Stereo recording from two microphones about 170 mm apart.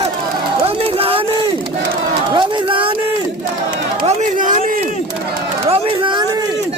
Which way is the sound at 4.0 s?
40° right (ahead or behind).